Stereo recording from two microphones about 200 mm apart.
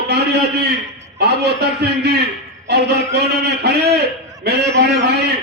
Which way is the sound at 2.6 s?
55° right (ahead or behind).